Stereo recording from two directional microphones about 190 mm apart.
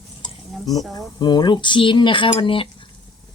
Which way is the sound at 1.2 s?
25° left (ahead or behind).